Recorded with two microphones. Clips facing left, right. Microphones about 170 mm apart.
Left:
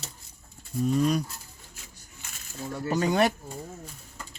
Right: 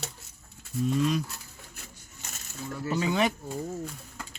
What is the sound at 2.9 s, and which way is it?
Speech, 45° left (ahead or behind).